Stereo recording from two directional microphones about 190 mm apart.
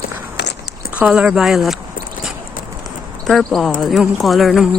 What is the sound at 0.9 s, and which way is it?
Speech, 5° right (ahead or behind).